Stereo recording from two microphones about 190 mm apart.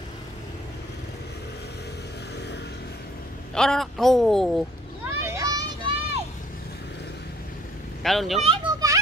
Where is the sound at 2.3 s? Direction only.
65° left (ahead or behind).